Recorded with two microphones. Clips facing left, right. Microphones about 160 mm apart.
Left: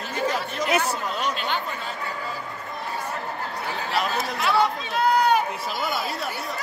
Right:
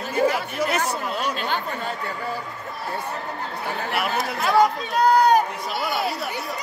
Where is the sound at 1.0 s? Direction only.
10° right (ahead or behind).